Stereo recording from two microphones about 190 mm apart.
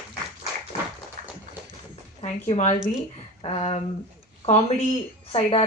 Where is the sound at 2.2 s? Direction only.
35° left (ahead or behind).